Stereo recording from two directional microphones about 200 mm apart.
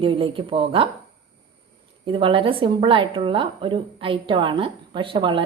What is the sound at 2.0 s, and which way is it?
A woman's voice, 25° right (ahead or behind).